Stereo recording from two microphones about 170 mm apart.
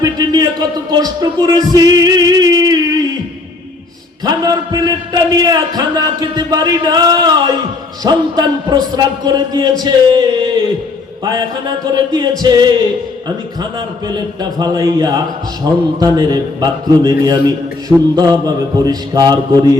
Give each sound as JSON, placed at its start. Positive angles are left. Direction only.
{"t": 0.0, "sound": "music", "side_deg": -25}
{"t": 4.2, "sound": "a sound", "side_deg": -25}
{"t": 8.0, "sound": "a man's voice", "side_deg": -25}